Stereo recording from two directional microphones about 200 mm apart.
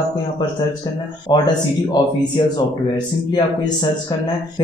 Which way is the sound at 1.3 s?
20° left (ahead or behind).